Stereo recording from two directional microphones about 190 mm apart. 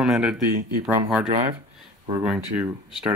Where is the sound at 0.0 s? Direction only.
5° right (ahead or behind).